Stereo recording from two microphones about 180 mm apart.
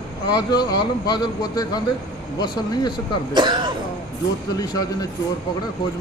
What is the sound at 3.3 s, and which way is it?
Speech, 25° right (ahead or behind).